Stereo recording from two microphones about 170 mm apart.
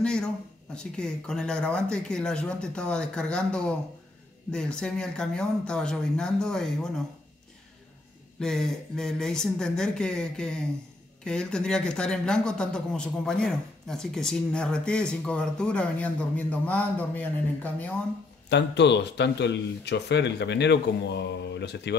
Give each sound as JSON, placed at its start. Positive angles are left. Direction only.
{"t": 0.0, "sound": "a sound", "side_deg": 5}
{"t": 0.7, "sound": "speech", "side_deg": 5}
{"t": 8.4, "sound": "speech", "side_deg": 5}
{"t": 18.5, "sound": "speech", "side_deg": 90}